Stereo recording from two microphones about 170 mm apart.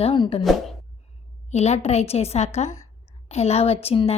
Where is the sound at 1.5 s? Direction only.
40° left (ahead or behind).